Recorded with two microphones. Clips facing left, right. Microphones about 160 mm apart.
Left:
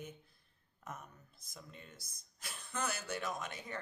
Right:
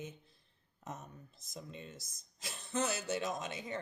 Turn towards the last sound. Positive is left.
turn(degrees=-20)  # may be behind; listen again after turning